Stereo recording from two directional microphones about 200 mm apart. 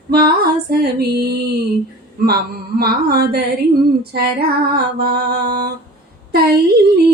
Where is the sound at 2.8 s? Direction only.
50° right (ahead or behind).